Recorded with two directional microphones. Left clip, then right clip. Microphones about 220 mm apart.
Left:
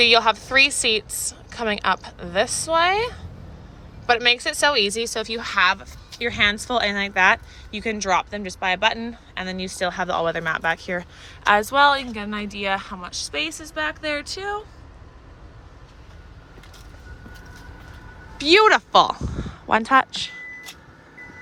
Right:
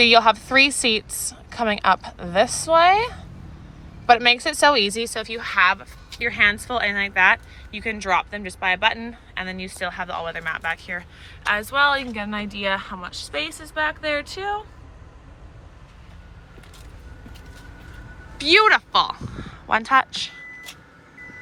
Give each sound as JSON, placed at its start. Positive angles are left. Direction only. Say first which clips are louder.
{"t": 0.0, "sound": "a woman's voice", "louder": "right 2 dB", "side_deg": 10}
{"t": 18.3, "sound": "speech", "louder": "even", "side_deg": 20}